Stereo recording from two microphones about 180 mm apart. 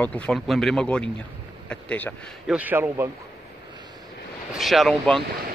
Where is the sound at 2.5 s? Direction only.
10° right (ahead or behind).